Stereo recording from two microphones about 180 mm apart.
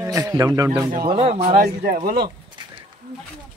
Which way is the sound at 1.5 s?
55° right (ahead or behind).